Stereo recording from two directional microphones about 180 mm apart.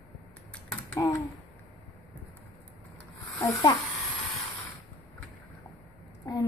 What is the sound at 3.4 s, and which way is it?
Speech, 15° left (ahead or behind).